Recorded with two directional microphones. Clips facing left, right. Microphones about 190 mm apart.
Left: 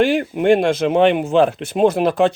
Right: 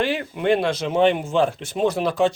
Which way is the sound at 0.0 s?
50° left (ahead or behind).